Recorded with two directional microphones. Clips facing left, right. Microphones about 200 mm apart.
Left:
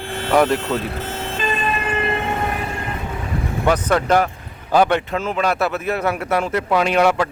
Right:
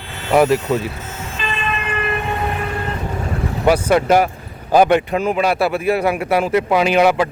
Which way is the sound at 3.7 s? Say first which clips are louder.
Right 3 dB; 10° right (ahead or behind).